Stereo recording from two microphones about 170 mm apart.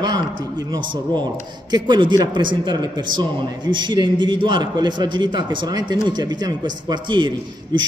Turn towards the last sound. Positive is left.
turn(degrees=-30)  # may be behind; listen again after turning